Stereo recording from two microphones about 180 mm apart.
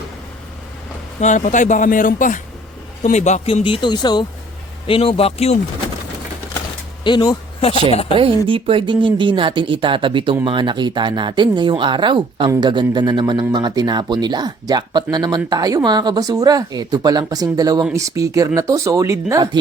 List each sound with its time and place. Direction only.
1.2 s speech: 40° left (ahead or behind)
7.0 s speech: 25° left (ahead or behind)
8.4 s speech: 30° right (ahead or behind)